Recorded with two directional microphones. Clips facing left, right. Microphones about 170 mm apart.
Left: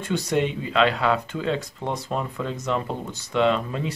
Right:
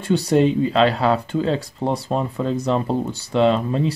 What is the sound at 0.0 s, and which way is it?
Speech, 35° right (ahead or behind).